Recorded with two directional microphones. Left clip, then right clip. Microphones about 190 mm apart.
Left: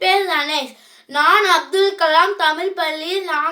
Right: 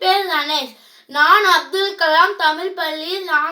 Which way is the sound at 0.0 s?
25° left (ahead or behind).